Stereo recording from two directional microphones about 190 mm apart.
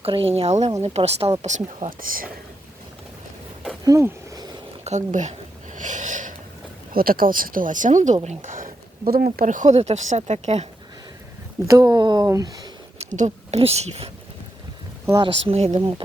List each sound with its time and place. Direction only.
0.0 s speech: 30° right (ahead or behind); by 2.3 s 50° right (ahead or behind)
3.8 s a sound: 15° right (ahead or behind)
4.8 s speech: 40° right (ahead or behind)
5.7 s a sound: 40° right (ahead or behind)
6.9 s speech: 50° right (ahead or behind)
11.7 s speech: 20° right (ahead or behind)
13.0 s speech: 40° right (ahead or behind)
15.0 s speech: 20° right (ahead or behind)
15.4 s speech: 35° right (ahead or behind)